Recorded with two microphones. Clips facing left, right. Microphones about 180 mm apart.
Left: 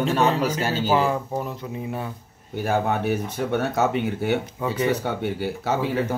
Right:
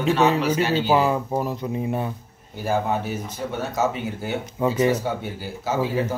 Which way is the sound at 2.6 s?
65° left (ahead or behind).